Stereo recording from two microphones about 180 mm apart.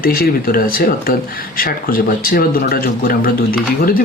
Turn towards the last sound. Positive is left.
turn(degrees=55)  # may be behind; listen again after turning